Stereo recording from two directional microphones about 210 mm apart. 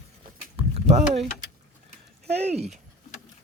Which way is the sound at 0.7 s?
30° right (ahead or behind).